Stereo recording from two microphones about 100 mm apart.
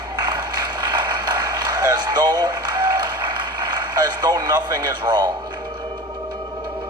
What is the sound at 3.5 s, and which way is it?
Speech, 45° right (ahead or behind).